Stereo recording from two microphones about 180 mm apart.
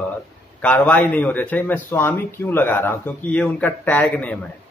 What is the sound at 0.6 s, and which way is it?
Speech, 10° left (ahead or behind).